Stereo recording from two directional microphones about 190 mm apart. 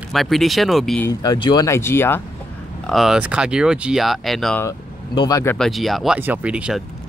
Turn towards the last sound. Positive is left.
turn(degrees=-5)  # may be behind; listen again after turning